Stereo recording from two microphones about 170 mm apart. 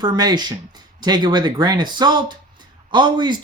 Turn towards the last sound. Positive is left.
turn(degrees=-25)  # may be behind; listen again after turning